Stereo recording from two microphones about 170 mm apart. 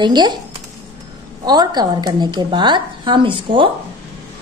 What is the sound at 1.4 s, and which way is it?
A woman's voice, 25° right (ahead or behind).